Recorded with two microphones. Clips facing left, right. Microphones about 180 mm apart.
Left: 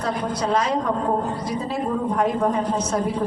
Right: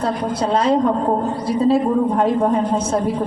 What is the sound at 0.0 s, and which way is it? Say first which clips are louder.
A woman's voice: right 4 dB; 30° right (ahead or behind).